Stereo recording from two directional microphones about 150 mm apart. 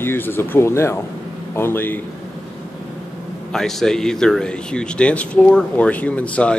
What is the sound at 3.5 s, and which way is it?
Speech, 5° left (ahead or behind).